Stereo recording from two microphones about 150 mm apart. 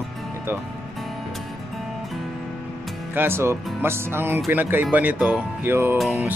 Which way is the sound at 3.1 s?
15° right (ahead or behind).